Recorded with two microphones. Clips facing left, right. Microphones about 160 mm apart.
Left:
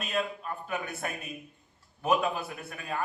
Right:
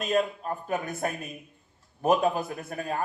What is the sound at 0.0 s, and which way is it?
A man's voice, 40° right (ahead or behind).